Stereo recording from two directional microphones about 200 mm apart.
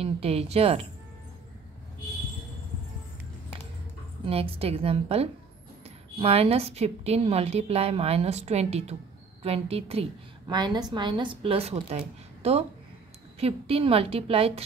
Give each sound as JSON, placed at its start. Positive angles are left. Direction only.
{"t": 0.0, "sound": "a woman's voice", "side_deg": -30}
{"t": 4.3, "sound": "a woman's voice", "side_deg": -30}